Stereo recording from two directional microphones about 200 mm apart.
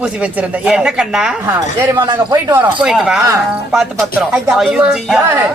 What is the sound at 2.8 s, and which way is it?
Speech, 5° right (ahead or behind).